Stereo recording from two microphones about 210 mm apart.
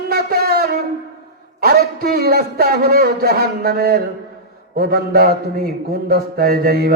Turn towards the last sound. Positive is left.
turn(degrees=-45)  # may be behind; listen again after turning